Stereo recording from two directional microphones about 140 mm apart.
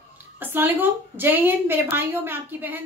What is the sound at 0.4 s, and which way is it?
A woman's voice, 15° right (ahead or behind).